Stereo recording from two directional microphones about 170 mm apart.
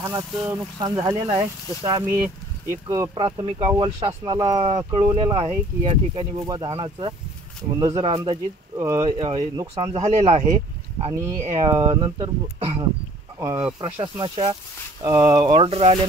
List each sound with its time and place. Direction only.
0.0 s speech: 15° right (ahead or behind)
3.2 s speech: 30° right (ahead or behind)
8.7 s speech: 20° right (ahead or behind)
9.9 s speech: 40° right (ahead or behind)
11.4 s speech: 35° right (ahead or behind)
13.4 s speech: 20° right (ahead or behind)
15.0 s speech: 20° right (ahead or behind)
15.3 s speech: 30° right (ahead or behind)